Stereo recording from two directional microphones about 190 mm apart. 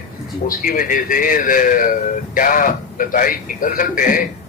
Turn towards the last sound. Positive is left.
turn(degrees=45)  # may be behind; listen again after turning